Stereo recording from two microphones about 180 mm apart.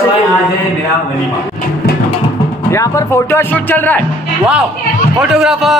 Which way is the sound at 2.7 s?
15° left (ahead or behind).